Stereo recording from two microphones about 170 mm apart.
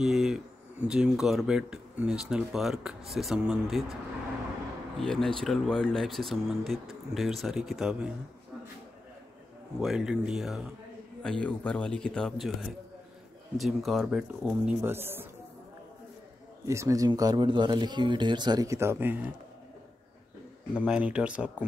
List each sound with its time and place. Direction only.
0.0 s speech: centre (ahead or behind)
5.0 s speech: 5° left (ahead or behind)
9.8 s speech: 5° right (ahead or behind)
16.6 s speech: 20° right (ahead or behind)
20.7 s speech: 5° right (ahead or behind)